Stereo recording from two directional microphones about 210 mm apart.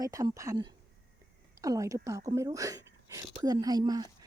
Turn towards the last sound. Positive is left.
turn(degrees=-20)  # may be behind; listen again after turning